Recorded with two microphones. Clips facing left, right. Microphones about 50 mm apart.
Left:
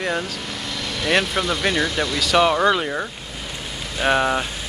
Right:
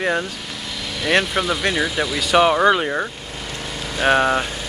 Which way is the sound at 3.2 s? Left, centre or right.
Centre.